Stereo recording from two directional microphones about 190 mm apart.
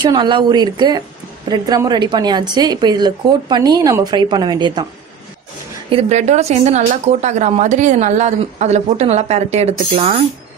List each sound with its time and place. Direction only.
0.0 s a woman's voice: 25° right (ahead or behind)
5.9 s speech: 35° right (ahead or behind)